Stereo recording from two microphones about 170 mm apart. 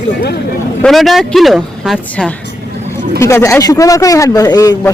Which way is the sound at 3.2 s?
15° left (ahead or behind).